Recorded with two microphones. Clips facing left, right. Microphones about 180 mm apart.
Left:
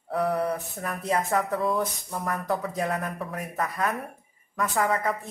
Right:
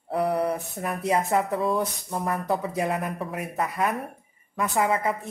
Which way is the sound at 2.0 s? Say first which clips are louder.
Right 2 dB; 25° right (ahead or behind).